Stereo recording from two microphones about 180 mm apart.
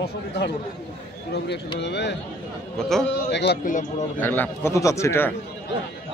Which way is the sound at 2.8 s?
Centre (ahead or behind).